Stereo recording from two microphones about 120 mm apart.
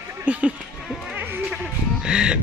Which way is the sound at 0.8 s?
Centre (ahead or behind).